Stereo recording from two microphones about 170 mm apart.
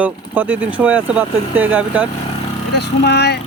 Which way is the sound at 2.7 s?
80° left.